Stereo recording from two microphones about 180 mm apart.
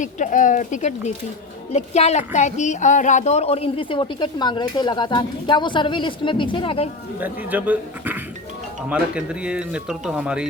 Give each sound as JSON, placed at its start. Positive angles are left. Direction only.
{"t": 0.0, "sound": "a woman's voice", "side_deg": 45}
{"t": 7.2, "sound": "speech", "side_deg": -10}